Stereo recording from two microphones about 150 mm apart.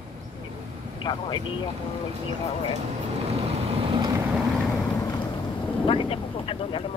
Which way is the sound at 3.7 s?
35° right (ahead or behind).